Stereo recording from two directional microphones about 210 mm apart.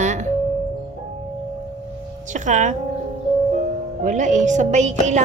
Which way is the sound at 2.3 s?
35° right (ahead or behind).